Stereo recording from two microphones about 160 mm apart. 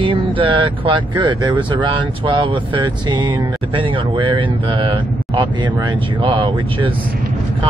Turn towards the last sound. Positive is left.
turn(degrees=-30)  # may be behind; listen again after turning